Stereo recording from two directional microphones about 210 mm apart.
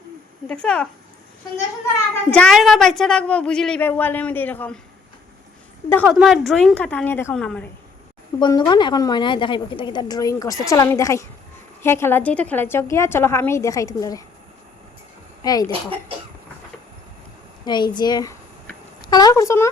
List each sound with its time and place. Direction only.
0.4 s a woman's voice: 5° left (ahead or behind)
2.3 s a woman's voice: 5° left (ahead or behind)
5.9 s a woman's voice: 10° left (ahead or behind)
8.4 s a woman's voice: 20° left (ahead or behind)
15.4 s a woman's voice: 15° left (ahead or behind)
17.7 s speech: 20° left (ahead or behind)